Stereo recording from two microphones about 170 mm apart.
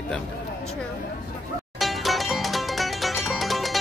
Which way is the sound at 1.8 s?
Centre (ahead or behind).